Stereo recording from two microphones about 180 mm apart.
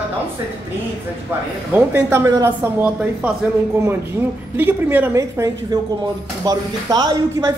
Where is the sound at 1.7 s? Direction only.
10° right (ahead or behind).